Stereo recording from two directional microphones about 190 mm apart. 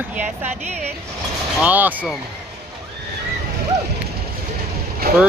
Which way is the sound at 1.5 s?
10° right (ahead or behind).